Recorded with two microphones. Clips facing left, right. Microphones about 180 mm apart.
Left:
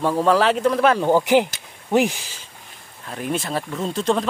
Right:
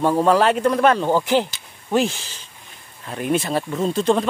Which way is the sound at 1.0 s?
15° left (ahead or behind).